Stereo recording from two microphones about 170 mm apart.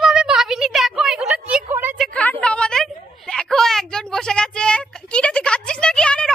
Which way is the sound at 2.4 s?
5° left (ahead or behind).